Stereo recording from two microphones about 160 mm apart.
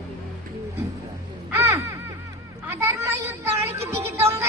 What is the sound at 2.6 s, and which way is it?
Music, 15° right (ahead or behind).